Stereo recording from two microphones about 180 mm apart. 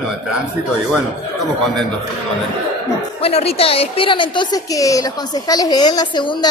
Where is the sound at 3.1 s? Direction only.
35° left (ahead or behind).